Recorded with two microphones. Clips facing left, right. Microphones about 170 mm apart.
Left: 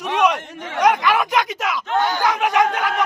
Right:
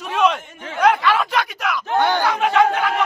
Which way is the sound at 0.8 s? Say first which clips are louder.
Even; 15° left (ahead or behind).